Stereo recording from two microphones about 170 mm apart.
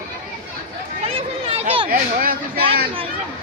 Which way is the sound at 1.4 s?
35° right (ahead or behind).